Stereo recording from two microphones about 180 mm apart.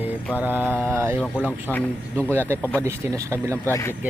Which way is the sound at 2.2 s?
10° right (ahead or behind).